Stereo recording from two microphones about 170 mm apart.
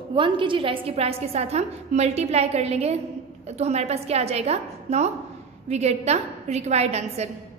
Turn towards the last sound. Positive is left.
turn(degrees=-40)  # may be behind; listen again after turning